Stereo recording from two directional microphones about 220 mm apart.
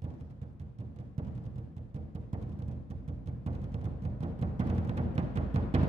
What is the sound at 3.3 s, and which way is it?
Music, 30° right (ahead or behind).